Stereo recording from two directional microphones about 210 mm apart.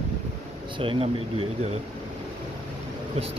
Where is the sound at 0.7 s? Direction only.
25° right (ahead or behind).